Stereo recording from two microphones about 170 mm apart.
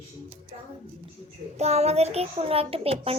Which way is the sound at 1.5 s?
40° right (ahead or behind).